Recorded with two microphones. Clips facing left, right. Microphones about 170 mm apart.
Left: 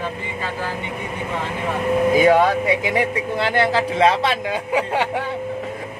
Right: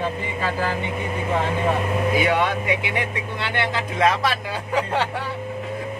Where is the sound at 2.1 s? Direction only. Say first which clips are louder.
Left 7 dB; 40° left (ahead or behind); by 5.1 s 15° left (ahead or behind).